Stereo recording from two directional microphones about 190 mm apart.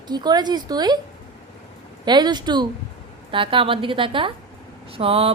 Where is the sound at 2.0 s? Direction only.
20° right (ahead or behind).